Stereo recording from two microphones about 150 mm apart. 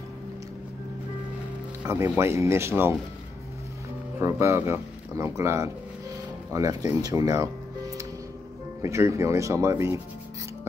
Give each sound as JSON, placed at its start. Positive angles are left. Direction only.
{"t": 1.8, "sound": "speech", "side_deg": -15}
{"t": 4.2, "sound": "speech", "side_deg": -20}
{"t": 6.9, "sound": "music", "side_deg": -25}
{"t": 8.8, "sound": "speech", "side_deg": -20}